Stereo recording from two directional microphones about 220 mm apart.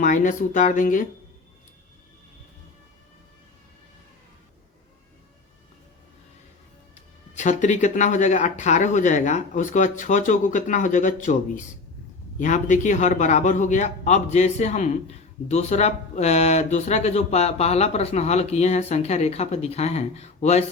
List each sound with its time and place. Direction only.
0.0 s speech: 35° left (ahead or behind)
7.3 s speech: 35° left (ahead or behind)